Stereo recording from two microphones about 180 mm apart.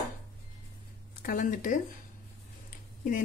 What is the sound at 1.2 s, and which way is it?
Speech, 50° left (ahead or behind).